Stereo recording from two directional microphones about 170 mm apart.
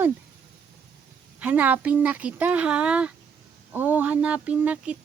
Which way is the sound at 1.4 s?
10° right (ahead or behind).